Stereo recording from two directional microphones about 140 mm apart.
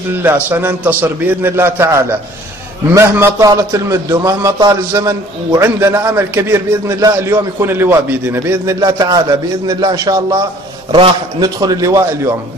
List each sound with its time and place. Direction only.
0.2 s a man's voice: 15° right (ahead or behind)